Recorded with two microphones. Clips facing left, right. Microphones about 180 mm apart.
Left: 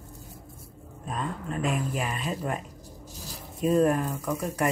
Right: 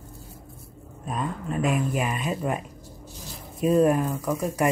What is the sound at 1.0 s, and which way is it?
Speech, 10° right (ahead or behind).